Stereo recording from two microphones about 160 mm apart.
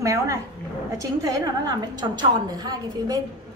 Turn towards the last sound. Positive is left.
turn(degrees=-25)  # may be behind; listen again after turning